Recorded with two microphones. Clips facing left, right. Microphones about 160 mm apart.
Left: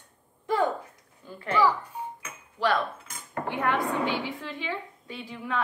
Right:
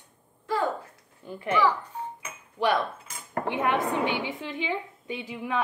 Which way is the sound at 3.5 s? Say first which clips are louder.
Right 1 dB; 20° right (ahead or behind).